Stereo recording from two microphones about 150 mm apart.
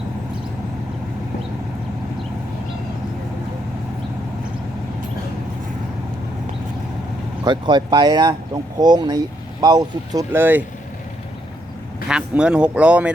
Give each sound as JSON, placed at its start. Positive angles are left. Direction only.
{"t": 7.4, "sound": "speech", "side_deg": -30}
{"t": 10.3, "sound": "speech", "side_deg": -15}
{"t": 12.0, "sound": "speech", "side_deg": -5}